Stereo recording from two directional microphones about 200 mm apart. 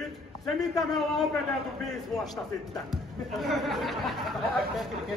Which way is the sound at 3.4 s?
Centre (ahead or behind).